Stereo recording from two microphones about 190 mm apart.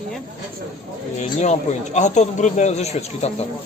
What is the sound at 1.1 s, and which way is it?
A man's voice, 35° left (ahead or behind).